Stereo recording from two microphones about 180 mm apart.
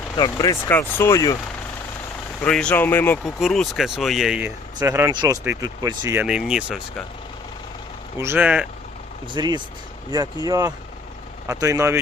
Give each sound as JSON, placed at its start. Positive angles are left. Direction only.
{"t": 0.2, "sound": "speech", "side_deg": 20}
{"t": 2.4, "sound": "speech", "side_deg": 5}
{"t": 6.2, "sound": "speech", "side_deg": -5}
{"t": 8.2, "sound": "speech", "side_deg": -10}
{"t": 9.2, "sound": "speech", "side_deg": -25}